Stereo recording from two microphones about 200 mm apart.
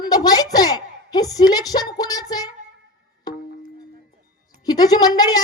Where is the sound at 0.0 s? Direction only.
20° left (ahead or behind).